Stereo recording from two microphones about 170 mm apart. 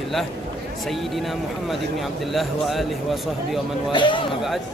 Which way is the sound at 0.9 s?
Centre (ahead or behind).